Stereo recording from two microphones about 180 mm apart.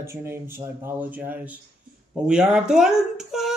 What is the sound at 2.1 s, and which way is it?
Speech, 5° right (ahead or behind).